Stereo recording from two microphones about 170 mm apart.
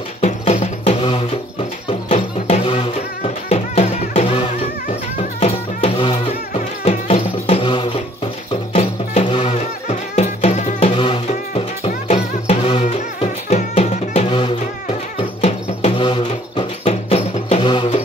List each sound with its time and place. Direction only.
0.2 s music: 40° left (ahead or behind)